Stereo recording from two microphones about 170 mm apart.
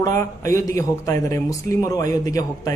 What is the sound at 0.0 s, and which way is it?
A man's voice, 20° left (ahead or behind).